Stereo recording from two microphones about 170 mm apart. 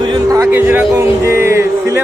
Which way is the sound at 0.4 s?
10° right (ahead or behind).